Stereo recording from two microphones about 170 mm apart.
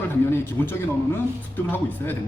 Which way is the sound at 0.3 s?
10° left (ahead or behind).